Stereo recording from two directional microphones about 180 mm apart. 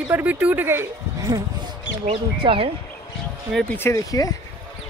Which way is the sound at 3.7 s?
15° left (ahead or behind).